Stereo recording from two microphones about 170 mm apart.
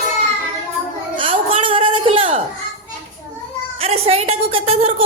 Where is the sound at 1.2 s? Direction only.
30° right (ahead or behind).